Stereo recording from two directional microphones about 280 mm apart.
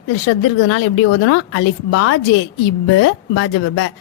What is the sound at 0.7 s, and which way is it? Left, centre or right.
A woman's voice, left.